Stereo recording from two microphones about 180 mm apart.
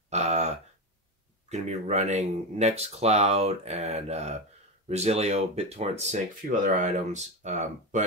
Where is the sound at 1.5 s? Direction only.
40° right (ahead or behind).